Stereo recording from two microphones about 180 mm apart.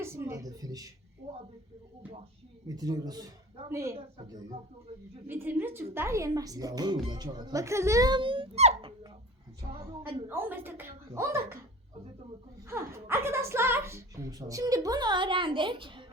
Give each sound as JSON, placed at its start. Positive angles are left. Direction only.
{"t": 0.0, "sound": "speech", "side_deg": -15}
{"t": 2.6, "sound": "a woman's voice", "side_deg": -20}
{"t": 5.3, "sound": "a woman's voice", "side_deg": -10}
{"t": 10.0, "sound": "a woman's voice", "side_deg": -10}
{"t": 12.6, "sound": "a woman's voice", "side_deg": -15}